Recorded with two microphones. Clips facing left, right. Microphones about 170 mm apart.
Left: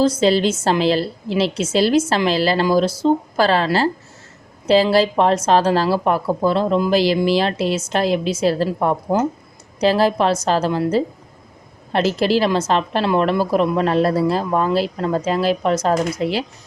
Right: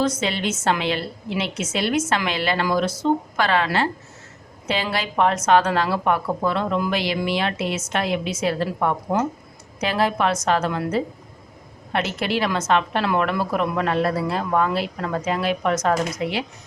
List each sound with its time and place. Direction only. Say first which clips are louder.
0.0 s a woman's voice: left 7 dB; 30° left (ahead or behind)